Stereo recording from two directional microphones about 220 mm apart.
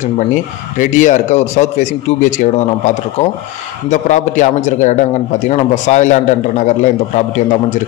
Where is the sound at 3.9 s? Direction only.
35° left (ahead or behind).